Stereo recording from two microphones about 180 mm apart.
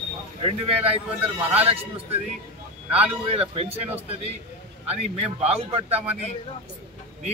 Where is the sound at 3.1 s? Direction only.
30° right (ahead or behind).